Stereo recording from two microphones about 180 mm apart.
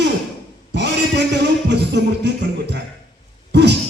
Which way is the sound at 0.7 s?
75° right (ahead or behind).